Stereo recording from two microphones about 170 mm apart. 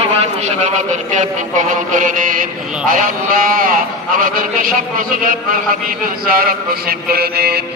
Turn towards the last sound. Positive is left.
turn(degrees=-65)  # may be behind; listen again after turning